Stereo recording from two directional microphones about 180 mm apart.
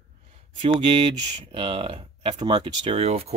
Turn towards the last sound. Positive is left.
turn(degrees=-35)  # may be behind; listen again after turning